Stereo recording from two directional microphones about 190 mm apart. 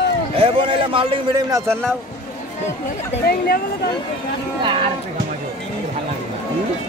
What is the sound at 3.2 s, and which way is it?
Speech, 50° left (ahead or behind).